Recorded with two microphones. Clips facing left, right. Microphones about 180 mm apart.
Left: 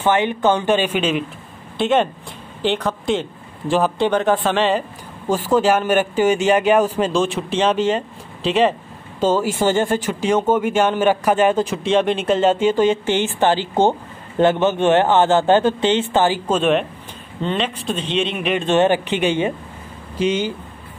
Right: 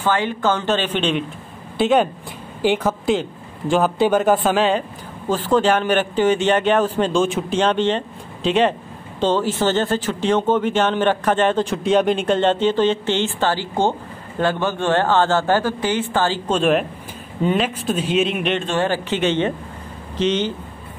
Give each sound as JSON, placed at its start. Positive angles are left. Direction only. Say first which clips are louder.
{"t": 0.0, "sound": "a man's voice", "louder": "left 3 dB", "side_deg": 20}
{"t": 16.4, "sound": "a man's voice", "louder": "even", "side_deg": 0}
{"t": 18.7, "sound": "speech", "louder": "left 5 dB", "side_deg": 20}